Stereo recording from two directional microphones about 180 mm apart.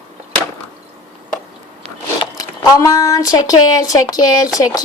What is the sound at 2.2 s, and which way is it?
Speech, 20° left (ahead or behind).